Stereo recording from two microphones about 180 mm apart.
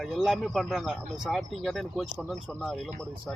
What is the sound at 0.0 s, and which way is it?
Speech, centre (ahead or behind).